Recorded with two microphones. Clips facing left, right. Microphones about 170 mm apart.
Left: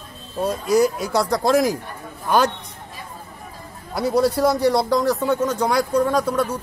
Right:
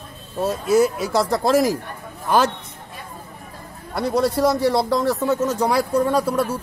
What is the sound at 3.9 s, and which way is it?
Speech, centre (ahead or behind).